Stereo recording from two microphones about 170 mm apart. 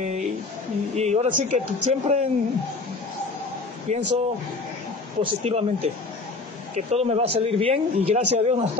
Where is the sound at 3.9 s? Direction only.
40° right (ahead or behind).